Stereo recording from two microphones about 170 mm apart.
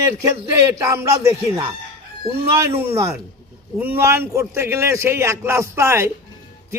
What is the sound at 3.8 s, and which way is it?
A man's voice, 10° right (ahead or behind).